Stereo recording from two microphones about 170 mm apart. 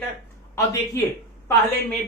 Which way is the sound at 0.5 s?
15° left (ahead or behind).